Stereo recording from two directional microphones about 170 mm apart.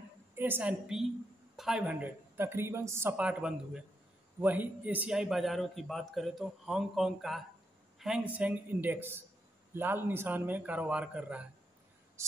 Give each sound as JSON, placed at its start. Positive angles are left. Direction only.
{"t": 0.4, "sound": "a man's voice", "side_deg": -10}
{"t": 12.2, "sound": "cricket", "side_deg": -15}